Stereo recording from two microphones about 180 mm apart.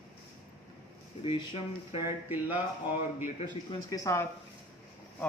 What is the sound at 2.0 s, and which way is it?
Speech, 10° right (ahead or behind).